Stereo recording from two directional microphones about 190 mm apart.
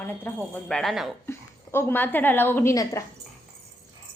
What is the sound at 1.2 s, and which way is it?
A woman's voice, 10° left (ahead or behind).